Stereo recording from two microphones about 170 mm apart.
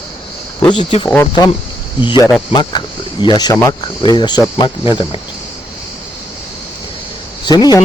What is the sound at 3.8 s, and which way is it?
Speech, 30° left (ahead or behind).